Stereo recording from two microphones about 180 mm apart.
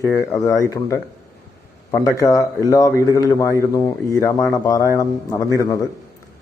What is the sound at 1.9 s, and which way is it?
A man's voice, 20° left (ahead or behind).